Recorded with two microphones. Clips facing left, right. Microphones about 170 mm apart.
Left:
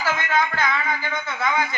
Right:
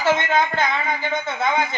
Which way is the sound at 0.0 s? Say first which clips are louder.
Right 4 dB; 25° right (ahead or behind).